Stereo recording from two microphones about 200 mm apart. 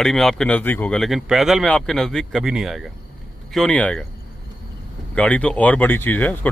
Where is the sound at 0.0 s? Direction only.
Centre (ahead or behind).